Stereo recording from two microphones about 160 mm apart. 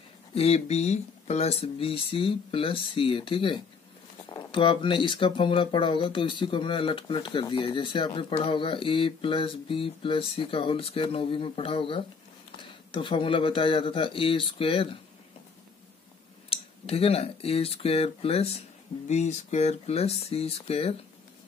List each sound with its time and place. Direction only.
0.3 s speech: 40° left (ahead or behind)
16.4 s speech: 35° left (ahead or behind)